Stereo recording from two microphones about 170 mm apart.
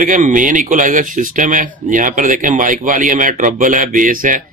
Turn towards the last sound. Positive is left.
turn(degrees=-55)  # may be behind; listen again after turning